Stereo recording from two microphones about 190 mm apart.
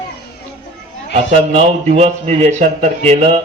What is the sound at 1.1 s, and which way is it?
A man's voice, 35° right (ahead or behind).